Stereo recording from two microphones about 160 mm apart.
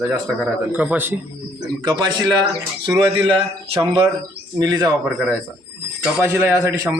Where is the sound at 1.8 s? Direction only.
25° right (ahead or behind).